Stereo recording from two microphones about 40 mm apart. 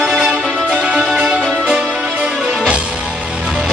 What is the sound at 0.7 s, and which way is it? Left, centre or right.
Music, centre.